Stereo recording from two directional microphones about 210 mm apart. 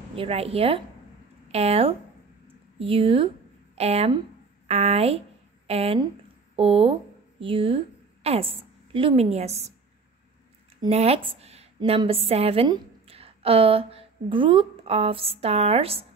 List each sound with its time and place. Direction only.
0.1 s a woman's voice: 25° right (ahead or behind)
10.8 s a woman's voice: 30° right (ahead or behind)